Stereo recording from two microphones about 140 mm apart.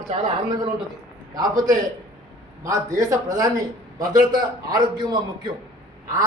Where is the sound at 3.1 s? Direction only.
25° right (ahead or behind).